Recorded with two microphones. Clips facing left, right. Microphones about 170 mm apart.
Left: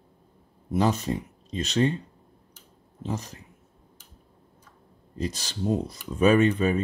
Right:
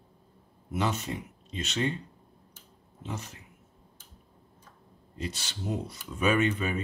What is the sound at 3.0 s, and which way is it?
Speech, 35° left (ahead or behind).